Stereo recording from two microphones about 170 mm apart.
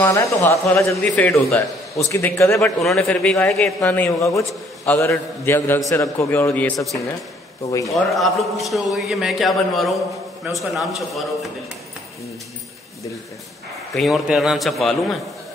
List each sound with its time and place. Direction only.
0.0 s speech: 15° left (ahead or behind)
2.8 s a man's voice: centre (ahead or behind)
13.9 s a man's voice: centre (ahead or behind)